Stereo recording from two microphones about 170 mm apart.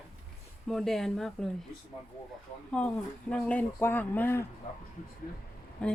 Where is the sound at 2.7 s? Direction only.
5° left (ahead or behind).